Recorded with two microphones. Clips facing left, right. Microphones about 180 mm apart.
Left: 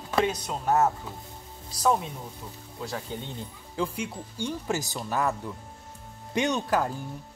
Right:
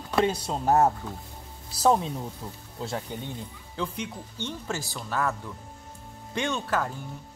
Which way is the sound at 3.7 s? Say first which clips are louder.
Left 2 dB; 10° left (ahead or behind).